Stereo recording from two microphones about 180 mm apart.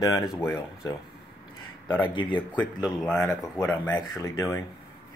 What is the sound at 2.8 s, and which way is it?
Speech, 5° left (ahead or behind).